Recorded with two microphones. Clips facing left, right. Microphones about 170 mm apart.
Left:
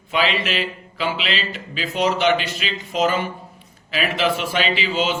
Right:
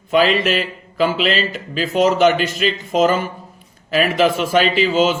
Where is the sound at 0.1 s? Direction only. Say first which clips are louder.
Right 7 dB; 45° right (ahead or behind).